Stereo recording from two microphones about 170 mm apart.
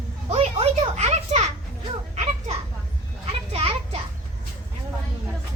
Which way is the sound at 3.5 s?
35° right (ahead or behind).